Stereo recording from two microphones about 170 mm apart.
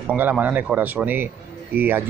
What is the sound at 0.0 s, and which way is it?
Speech, 10° right (ahead or behind).